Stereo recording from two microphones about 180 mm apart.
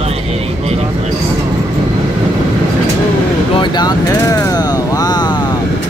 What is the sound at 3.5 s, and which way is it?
Vehicle, 25° left (ahead or behind).